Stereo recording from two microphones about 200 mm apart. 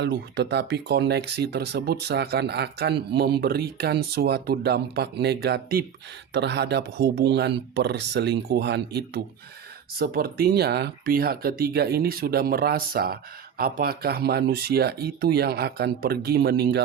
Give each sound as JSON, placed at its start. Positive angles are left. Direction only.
{"t": 0.0, "sound": "speech", "side_deg": -60}